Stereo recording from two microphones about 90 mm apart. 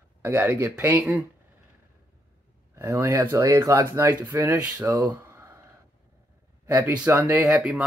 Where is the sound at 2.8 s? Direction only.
25° right (ahead or behind).